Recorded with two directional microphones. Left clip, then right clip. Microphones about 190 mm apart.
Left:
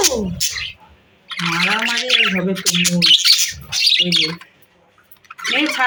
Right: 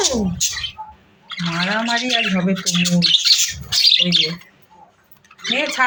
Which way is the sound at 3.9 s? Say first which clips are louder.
Left 2 dB; 30° left (ahead or behind).